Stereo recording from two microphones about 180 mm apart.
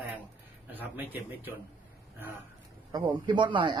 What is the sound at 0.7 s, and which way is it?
Speech, 10° right (ahead or behind).